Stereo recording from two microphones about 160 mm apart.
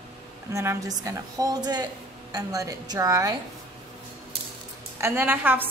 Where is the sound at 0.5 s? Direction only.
20° right (ahead or behind).